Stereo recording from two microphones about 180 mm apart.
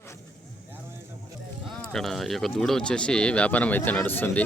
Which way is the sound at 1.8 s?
Centre (ahead or behind).